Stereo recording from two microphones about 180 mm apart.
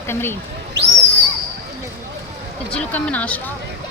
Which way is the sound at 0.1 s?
15° left (ahead or behind).